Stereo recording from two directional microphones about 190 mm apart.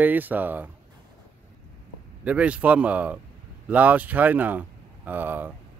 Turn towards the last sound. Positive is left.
turn(degrees=-10)  # may be behind; listen again after turning